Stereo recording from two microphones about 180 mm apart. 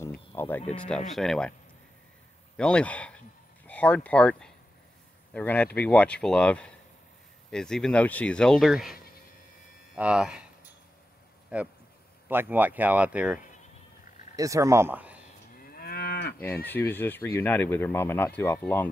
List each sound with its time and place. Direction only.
0.3 s insect: 20° left (ahead or behind)
0.7 s speech: 5° left (ahead or behind)
2.5 s speech: 5° left (ahead or behind)
9.9 s speech: 5° right (ahead or behind)
11.5 s speech: 5° right (ahead or behind)
14.3 s speech: 20° right (ahead or behind)
15.8 s moo: 55° left (ahead or behind)
16.6 s speech: 10° left (ahead or behind)